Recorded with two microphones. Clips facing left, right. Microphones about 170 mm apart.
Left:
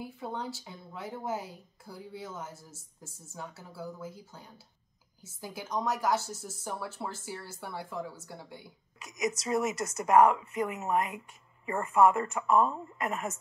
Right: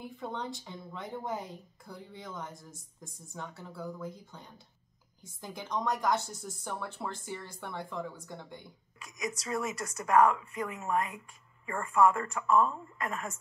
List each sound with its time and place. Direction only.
0.0 s a woman's voice: 5° left (ahead or behind)
9.0 s a woman's voice: 20° left (ahead or behind)